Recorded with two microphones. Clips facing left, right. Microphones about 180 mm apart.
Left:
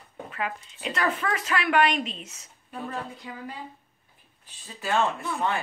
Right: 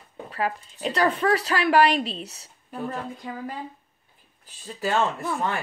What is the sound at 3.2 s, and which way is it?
Speech, 50° right (ahead or behind).